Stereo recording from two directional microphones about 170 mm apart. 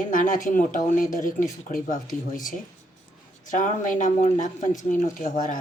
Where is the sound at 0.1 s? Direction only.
50° left (ahead or behind).